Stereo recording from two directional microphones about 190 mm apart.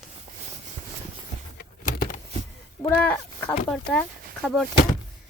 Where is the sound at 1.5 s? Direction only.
45° left (ahead or behind).